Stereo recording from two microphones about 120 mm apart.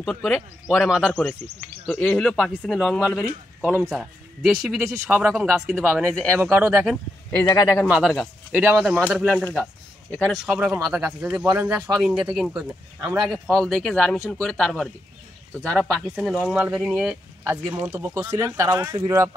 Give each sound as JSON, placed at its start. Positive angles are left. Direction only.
{"t": 0.0, "sound": "speech", "side_deg": 5}
{"t": 0.8, "sound": "speech", "side_deg": -5}
{"t": 1.9, "sound": "speech", "side_deg": 10}
{"t": 6.1, "sound": "speech", "side_deg": 10}
{"t": 6.4, "sound": "speech", "side_deg": -10}
{"t": 7.2, "sound": "a man's voice", "side_deg": 25}
{"t": 7.9, "sound": "speech", "side_deg": 0}
{"t": 11.9, "sound": "speech", "side_deg": -5}
{"t": 16.5, "sound": "speech", "side_deg": -10}
{"t": 17.4, "sound": "speech", "side_deg": -20}